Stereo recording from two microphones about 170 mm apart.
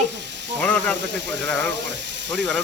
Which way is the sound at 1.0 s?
90° right.